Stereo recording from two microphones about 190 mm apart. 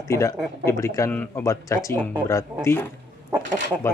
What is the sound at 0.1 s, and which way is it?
Speech, 15° left (ahead or behind).